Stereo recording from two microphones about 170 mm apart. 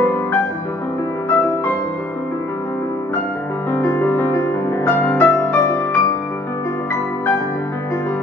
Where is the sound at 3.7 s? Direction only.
15° left (ahead or behind).